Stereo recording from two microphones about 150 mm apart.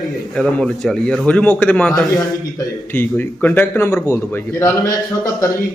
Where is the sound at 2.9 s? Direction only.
15° left (ahead or behind).